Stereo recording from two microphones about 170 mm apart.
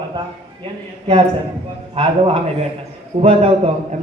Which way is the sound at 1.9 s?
35° right (ahead or behind).